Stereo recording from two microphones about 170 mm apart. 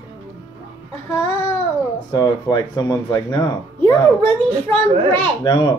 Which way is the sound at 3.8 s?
10° left (ahead or behind).